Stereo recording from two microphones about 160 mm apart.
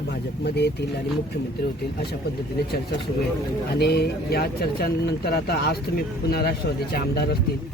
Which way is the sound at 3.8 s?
90° left.